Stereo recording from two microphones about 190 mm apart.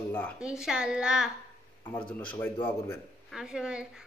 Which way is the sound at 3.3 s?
5° right (ahead or behind).